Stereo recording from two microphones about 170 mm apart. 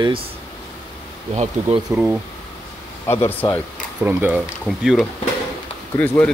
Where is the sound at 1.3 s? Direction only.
40° right (ahead or behind).